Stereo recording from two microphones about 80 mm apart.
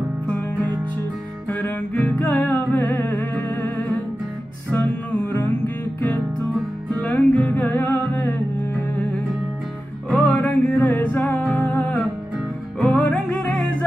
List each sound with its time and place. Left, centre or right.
1.5 s music: centre
6.9 s music: centre
10.0 s music: centre